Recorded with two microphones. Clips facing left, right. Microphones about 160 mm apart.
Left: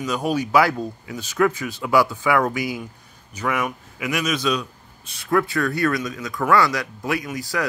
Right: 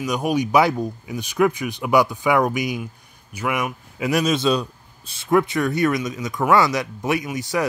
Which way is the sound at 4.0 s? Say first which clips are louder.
Right 4 dB; 30° right (ahead or behind).